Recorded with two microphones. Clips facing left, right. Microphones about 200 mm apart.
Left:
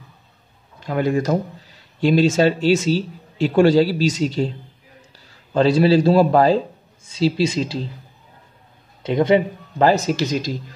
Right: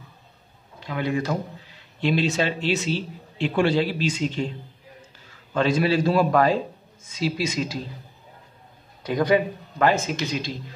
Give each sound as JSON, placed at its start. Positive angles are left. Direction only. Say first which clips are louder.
{"t": 0.7, "sound": "speech", "louder": "left 6 dB", "side_deg": 45}
{"t": 5.5, "sound": "speech", "louder": "left 6 dB", "side_deg": 30}
{"t": 9.0, "sound": "speech", "louder": "left 4 dB", "side_deg": 25}